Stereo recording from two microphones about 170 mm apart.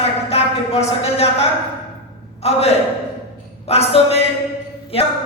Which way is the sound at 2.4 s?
35° left (ahead or behind).